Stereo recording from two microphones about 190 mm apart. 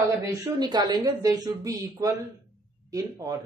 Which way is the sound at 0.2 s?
20° right (ahead or behind).